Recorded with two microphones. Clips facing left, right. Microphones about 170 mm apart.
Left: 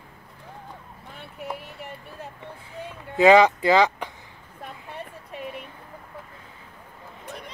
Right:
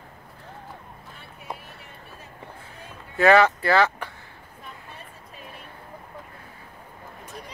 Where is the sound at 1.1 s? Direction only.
65° left (ahead or behind).